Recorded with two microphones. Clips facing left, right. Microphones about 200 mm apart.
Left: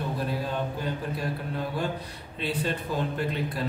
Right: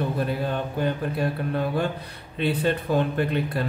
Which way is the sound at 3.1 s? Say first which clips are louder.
Right 5 dB; 60° right (ahead or behind).